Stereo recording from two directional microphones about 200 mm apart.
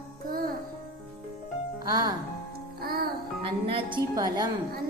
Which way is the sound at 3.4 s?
25° right (ahead or behind).